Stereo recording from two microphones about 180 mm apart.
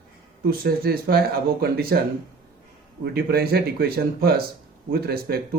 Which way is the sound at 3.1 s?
60° right (ahead or behind).